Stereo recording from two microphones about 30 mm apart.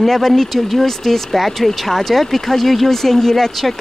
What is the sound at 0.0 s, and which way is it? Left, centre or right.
Speech, centre.